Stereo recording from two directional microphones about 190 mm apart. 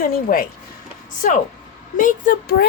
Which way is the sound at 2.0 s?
45° left (ahead or behind).